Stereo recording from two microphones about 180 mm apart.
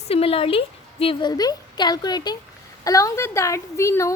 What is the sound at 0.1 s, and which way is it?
A woman's voice, 30° left (ahead or behind).